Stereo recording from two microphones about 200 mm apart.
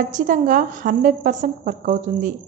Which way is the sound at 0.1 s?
40° right (ahead or behind).